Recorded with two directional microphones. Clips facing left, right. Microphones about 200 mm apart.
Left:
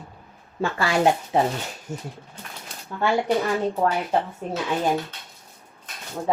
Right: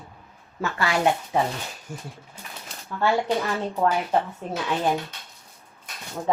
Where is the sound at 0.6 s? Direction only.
30° left (ahead or behind).